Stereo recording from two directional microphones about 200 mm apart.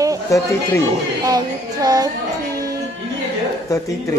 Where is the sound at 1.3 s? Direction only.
20° right (ahead or behind).